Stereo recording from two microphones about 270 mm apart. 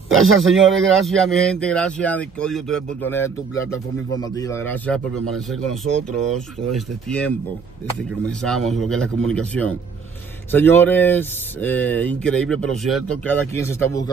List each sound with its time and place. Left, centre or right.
0.3 s speech: centre
6.3 s speech: centre